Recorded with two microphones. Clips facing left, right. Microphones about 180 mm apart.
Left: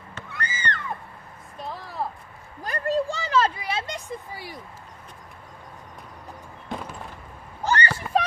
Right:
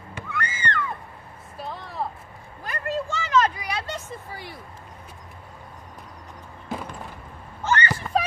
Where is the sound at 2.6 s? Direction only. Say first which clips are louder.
Left 4 dB; 35° left (ahead or behind).